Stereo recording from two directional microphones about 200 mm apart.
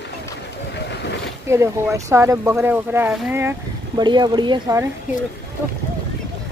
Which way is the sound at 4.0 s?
20° right (ahead or behind).